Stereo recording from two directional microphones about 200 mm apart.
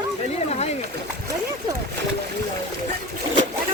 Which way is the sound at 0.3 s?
30° left (ahead or behind).